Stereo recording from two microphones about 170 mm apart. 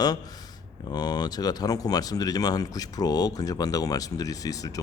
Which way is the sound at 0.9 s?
25° left (ahead or behind).